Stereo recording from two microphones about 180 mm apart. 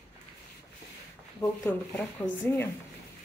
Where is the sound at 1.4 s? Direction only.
10° left (ahead or behind).